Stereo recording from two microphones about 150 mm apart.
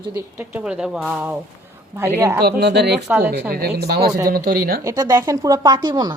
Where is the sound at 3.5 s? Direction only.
90° right.